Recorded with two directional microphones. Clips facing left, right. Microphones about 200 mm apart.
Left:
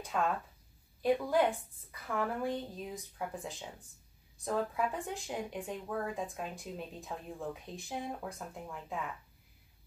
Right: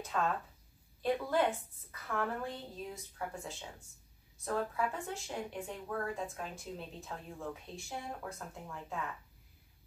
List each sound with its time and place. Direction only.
0.1 s speech: 10° left (ahead or behind)